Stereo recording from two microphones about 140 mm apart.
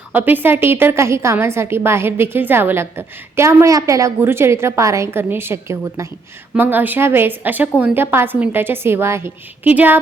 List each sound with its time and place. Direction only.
0.1 s a woman's voice: 15° right (ahead or behind)